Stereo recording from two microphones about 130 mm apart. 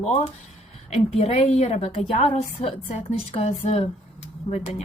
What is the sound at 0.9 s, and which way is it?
A woman's voice, 55° left (ahead or behind).